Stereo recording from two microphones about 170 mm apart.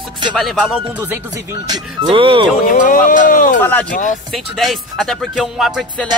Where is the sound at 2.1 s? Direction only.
30° right (ahead or behind).